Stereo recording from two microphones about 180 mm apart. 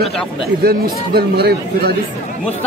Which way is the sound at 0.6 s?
60° right (ahead or behind).